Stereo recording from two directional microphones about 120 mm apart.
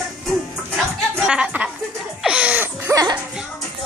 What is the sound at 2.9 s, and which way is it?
Speech, 35° right (ahead or behind).